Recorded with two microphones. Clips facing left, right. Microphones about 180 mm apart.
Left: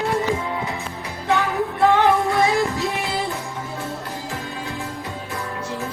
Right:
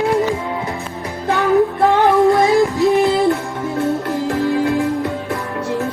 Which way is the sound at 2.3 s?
45° right (ahead or behind).